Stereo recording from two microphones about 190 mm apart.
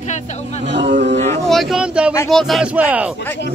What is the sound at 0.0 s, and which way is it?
Speech, 40° left (ahead or behind).